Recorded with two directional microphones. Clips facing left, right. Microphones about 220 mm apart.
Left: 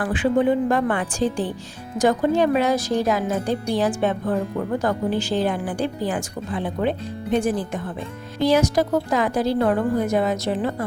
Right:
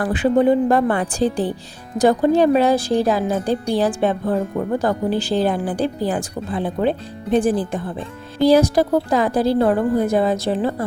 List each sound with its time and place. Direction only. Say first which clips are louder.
0.0 s speech: right 3 dB; 40° right (ahead or behind)